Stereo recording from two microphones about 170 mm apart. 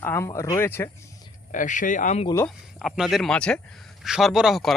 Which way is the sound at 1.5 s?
50° left (ahead or behind).